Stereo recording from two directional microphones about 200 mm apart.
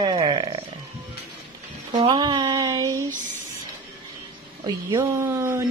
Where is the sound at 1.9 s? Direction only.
25° right (ahead or behind).